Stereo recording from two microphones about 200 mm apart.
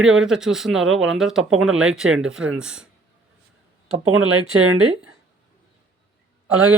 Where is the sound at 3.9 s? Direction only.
90° right.